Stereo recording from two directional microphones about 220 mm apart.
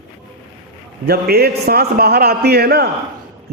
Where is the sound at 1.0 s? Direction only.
45° right (ahead or behind).